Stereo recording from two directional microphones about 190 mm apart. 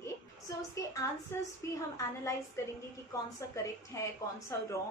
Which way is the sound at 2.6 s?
15° left (ahead or behind).